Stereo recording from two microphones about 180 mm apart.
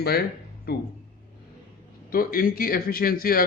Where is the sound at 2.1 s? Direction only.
55° left (ahead or behind).